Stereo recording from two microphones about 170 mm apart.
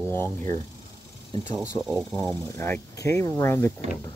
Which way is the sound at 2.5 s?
15° left (ahead or behind).